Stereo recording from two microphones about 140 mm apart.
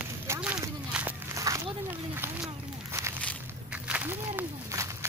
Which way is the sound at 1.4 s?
25° right (ahead or behind).